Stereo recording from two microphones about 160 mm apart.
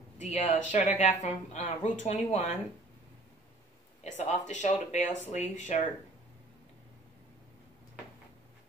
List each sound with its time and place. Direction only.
0.2 s speech: 45° left (ahead or behind)
4.0 s speech: 45° left (ahead or behind)